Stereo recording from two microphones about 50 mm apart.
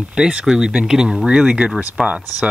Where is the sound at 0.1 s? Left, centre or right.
Centre.